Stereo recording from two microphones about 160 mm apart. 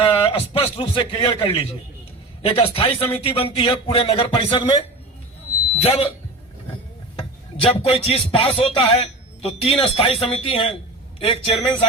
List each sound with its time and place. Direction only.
0.0 s a man's voice: 35° left (ahead or behind)
2.4 s music: 35° left (ahead or behind)
5.8 s music: 40° left (ahead or behind)
7.2 s music: 35° left (ahead or behind)